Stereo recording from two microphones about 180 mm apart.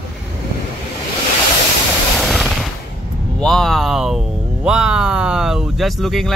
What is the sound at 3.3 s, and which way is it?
Speech, 5° left (ahead or behind).